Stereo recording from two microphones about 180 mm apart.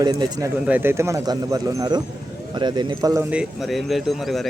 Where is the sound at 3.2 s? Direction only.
5° right (ahead or behind).